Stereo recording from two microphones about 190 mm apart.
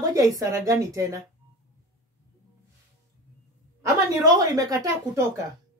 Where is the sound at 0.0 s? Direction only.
20° right (ahead or behind).